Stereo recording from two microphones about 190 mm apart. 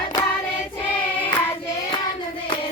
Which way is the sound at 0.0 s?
20° left (ahead or behind).